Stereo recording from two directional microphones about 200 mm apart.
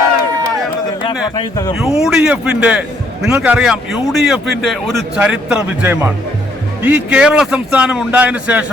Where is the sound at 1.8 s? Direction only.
5° right (ahead or behind).